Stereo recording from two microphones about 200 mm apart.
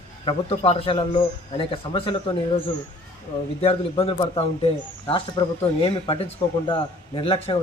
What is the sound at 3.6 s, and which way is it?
Speech, 30° left (ahead or behind).